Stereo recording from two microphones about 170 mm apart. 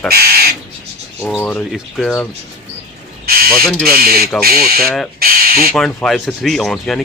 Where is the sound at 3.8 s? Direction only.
60° right (ahead or behind).